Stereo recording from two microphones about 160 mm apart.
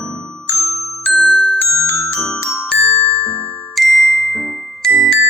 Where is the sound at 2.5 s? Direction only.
5° left (ahead or behind).